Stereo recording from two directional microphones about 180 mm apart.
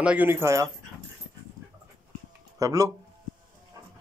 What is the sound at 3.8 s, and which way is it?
Music, 20° right (ahead or behind).